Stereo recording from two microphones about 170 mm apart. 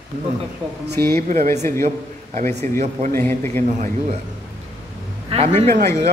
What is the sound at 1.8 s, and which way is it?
A man's voice, 50° right (ahead or behind).